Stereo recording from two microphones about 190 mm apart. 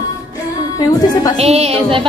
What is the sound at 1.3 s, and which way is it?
Speech, 35° right (ahead or behind).